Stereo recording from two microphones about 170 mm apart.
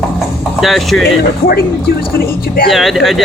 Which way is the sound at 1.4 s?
55° left (ahead or behind).